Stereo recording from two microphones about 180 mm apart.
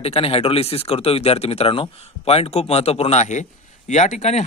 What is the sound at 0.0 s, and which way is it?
Speech, 35° left (ahead or behind).